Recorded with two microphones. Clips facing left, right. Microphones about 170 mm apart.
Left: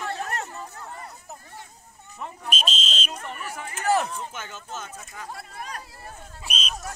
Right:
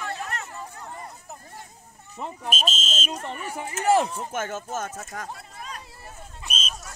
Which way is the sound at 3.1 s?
30° right (ahead or behind).